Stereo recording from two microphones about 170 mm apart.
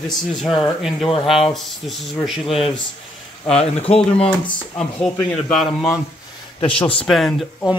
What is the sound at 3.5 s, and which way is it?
Speech, 35° left (ahead or behind).